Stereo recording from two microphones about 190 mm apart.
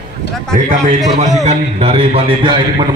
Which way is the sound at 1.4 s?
30° right (ahead or behind).